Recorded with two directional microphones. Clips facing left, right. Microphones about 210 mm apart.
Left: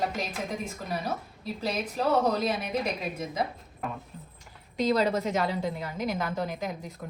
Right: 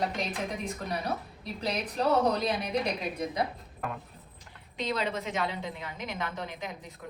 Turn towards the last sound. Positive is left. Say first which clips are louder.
# left 5 dB
turn(degrees=40)  # may be behind; listen again after turning